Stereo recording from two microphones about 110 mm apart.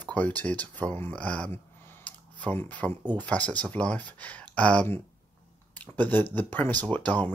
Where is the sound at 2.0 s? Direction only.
15° left (ahead or behind).